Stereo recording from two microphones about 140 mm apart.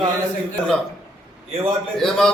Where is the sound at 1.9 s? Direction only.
5° left (ahead or behind).